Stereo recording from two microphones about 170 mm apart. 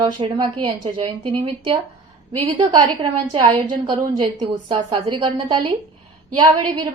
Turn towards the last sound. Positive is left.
turn(degrees=-25)  # may be behind; listen again after turning